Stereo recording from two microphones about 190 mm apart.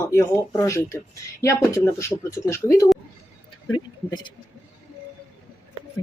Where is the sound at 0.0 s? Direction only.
15° left (ahead or behind).